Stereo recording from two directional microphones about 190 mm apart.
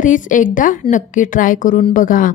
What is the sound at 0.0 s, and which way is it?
A woman's voice, 45° left (ahead or behind).